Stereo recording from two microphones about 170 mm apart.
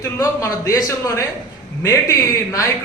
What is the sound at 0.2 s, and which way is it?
A man's voice, 20° left (ahead or behind).